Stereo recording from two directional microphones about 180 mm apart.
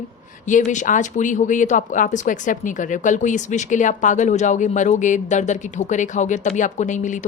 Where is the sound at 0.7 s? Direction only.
45° left (ahead or behind).